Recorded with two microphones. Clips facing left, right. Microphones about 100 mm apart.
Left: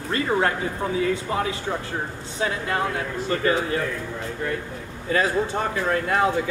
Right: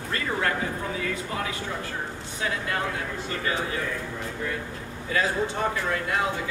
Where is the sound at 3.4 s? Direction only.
40° left (ahead or behind).